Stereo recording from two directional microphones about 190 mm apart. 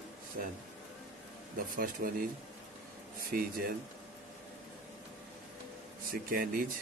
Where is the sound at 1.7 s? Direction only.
45° right (ahead or behind).